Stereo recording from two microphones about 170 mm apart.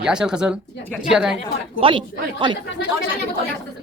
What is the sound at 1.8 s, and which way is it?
Speech, 30° right (ahead or behind).